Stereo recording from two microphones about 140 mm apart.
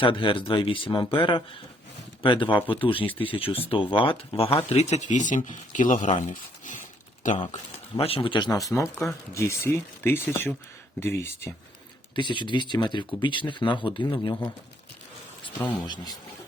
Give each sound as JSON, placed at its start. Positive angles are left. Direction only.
{"t": 0.0, "sound": "speech", "side_deg": 35}
{"t": 6.1, "sound": "a sound", "side_deg": 65}
{"t": 7.9, "sound": "speech", "side_deg": 40}
{"t": 12.1, "sound": "speech", "side_deg": 35}